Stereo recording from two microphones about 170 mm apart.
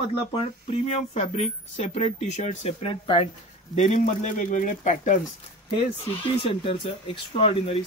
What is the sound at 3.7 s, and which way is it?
Speech, 50° left (ahead or behind).